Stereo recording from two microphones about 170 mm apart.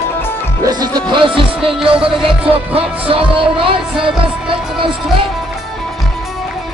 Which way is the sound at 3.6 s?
5° right (ahead or behind).